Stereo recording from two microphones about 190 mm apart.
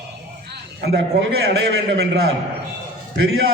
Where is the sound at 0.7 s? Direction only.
65° right (ahead or behind).